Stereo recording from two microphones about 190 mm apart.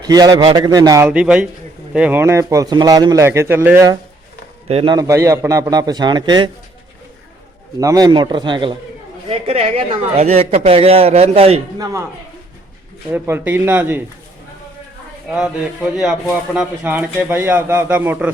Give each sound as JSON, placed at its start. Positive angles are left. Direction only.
{"t": 0.0, "sound": "a man's voice", "side_deg": -20}
{"t": 4.7, "sound": "a man's voice", "side_deg": -30}
{"t": 4.9, "sound": "a man's voice", "side_deg": -15}
{"t": 7.8, "sound": "a man's voice", "side_deg": -20}
{"t": 11.8, "sound": "a man's voice", "side_deg": -15}
{"t": 13.1, "sound": "a man's voice", "side_deg": -10}
{"t": 15.3, "sound": "a man's voice", "side_deg": -5}